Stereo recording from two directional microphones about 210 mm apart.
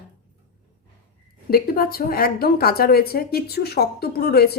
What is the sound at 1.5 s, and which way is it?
A woman's voice, 45° left (ahead or behind).